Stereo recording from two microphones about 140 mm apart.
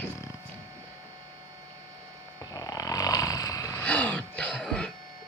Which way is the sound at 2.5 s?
25° left (ahead or behind).